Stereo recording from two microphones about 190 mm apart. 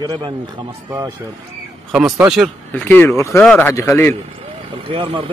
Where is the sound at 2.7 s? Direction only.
10° left (ahead or behind).